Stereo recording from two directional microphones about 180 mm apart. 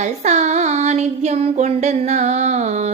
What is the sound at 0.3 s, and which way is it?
Child singing, 40° right (ahead or behind).